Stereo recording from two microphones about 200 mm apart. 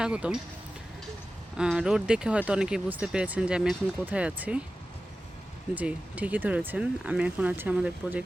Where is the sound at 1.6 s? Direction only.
5° right (ahead or behind).